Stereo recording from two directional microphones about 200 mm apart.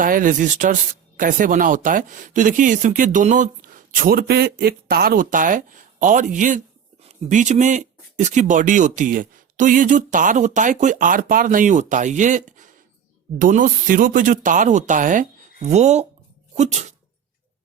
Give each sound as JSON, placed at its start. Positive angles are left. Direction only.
{"t": 0.0, "sound": "speech", "side_deg": -40}